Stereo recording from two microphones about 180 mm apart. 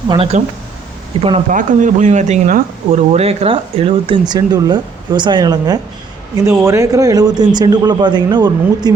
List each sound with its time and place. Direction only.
0.1 s speech: 35° right (ahead or behind)
1.5 s a man's voice: 45° right (ahead or behind); by 8.9 s 25° right (ahead or behind)